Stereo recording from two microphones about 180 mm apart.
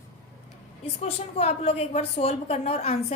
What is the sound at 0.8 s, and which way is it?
A woman's voice, 35° left (ahead or behind).